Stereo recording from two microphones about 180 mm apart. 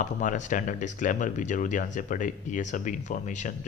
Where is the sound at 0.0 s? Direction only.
45° left (ahead or behind).